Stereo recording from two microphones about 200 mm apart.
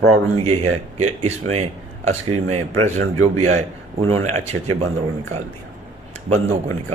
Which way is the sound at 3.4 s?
35° right (ahead or behind).